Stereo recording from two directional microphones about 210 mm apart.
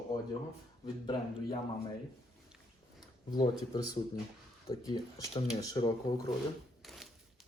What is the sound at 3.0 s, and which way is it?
Speech, 20° left (ahead or behind).